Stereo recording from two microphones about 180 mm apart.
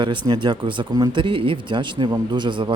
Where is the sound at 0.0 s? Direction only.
25° right (ahead or behind).